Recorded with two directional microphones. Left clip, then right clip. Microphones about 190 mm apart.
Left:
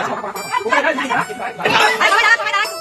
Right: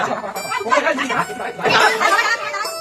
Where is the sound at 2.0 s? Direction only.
45° left (ahead or behind).